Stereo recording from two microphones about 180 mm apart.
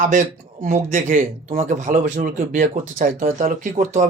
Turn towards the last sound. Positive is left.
turn(degrees=-40)  # may be behind; listen again after turning